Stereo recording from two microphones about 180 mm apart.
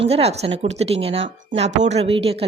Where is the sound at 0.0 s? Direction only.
35° right (ahead or behind).